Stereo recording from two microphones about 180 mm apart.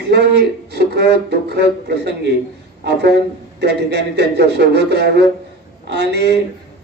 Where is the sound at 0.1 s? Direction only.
65° right (ahead or behind).